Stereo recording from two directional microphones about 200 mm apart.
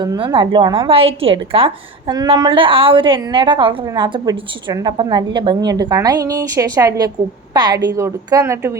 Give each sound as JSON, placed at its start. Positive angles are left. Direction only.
{"t": 0.0, "sound": "a woman's voice", "side_deg": -20}